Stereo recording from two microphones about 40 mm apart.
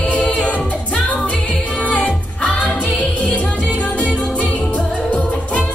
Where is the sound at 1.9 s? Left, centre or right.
Left.